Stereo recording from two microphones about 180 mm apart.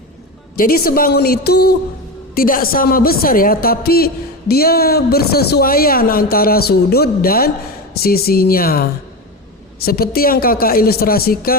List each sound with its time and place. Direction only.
0.5 s a woman's voice: 55° left (ahead or behind)